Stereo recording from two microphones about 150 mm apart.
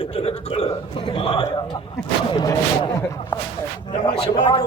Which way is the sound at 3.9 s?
30° left (ahead or behind).